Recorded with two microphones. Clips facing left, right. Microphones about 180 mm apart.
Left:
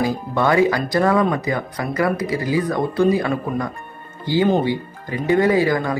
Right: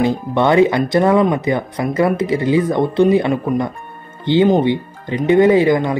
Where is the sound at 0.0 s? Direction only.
25° right (ahead or behind).